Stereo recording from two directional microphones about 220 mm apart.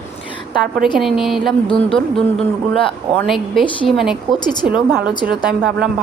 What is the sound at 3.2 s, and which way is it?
A woman's voice, centre (ahead or behind).